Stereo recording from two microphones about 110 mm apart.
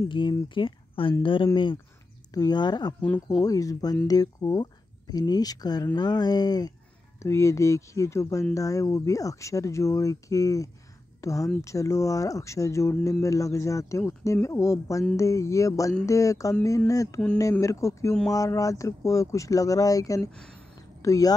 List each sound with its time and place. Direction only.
0.1 s speech: 45° left (ahead or behind)
3.0 s speech: 10° left (ahead or behind)
3.4 s speech: 35° left (ahead or behind)
7.2 s speech: 25° left (ahead or behind)
20.2 s speech: 10° left (ahead or behind)
21.0 s speech: 30° left (ahead or behind)